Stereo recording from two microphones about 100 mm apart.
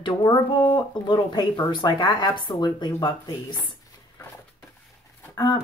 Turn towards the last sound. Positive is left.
turn(degrees=40)  # may be behind; listen again after turning